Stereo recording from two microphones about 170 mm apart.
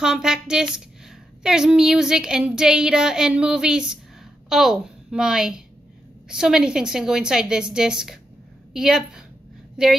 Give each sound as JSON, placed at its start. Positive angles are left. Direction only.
{"t": 0.0, "sound": "a woman's voice", "side_deg": -5}